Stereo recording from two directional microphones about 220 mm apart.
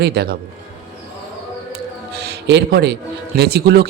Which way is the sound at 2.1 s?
45° right (ahead or behind).